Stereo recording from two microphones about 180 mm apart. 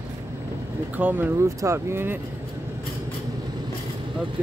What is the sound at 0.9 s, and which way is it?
Speech, 10° right (ahead or behind).